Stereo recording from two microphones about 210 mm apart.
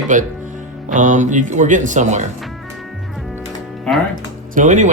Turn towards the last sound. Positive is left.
turn(degrees=-35)  # may be behind; listen again after turning